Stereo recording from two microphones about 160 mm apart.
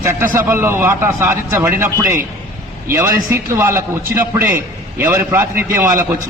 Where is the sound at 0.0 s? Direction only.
15° right (ahead or behind).